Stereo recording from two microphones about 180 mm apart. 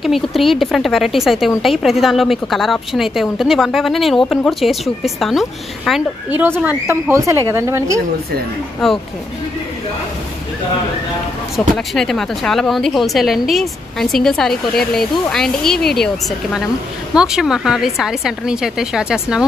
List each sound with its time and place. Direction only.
0.0 s a woman's voice: centre (ahead or behind); by 8.0 s 15° right (ahead or behind)
11.5 s a woman's voice: centre (ahead or behind)